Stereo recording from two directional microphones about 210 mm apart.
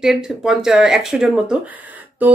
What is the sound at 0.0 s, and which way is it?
Speech, 5° right (ahead or behind).